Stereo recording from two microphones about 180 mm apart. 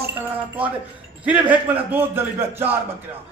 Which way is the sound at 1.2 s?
10° right (ahead or behind).